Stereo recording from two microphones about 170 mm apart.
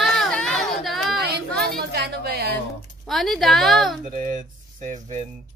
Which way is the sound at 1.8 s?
70° right (ahead or behind).